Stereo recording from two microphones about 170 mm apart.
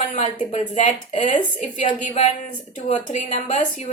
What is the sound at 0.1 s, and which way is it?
A woman's voice, 45° left (ahead or behind).